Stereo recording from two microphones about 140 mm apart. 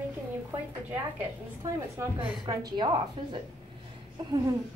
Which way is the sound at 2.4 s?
30° right (ahead or behind).